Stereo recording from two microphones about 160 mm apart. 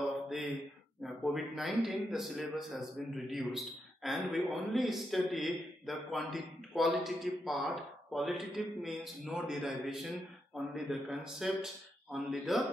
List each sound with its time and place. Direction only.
1.0 s a man's voice: centre (ahead or behind)